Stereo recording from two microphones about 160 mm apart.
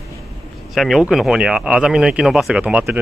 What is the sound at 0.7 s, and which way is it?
Speech, centre (ahead or behind).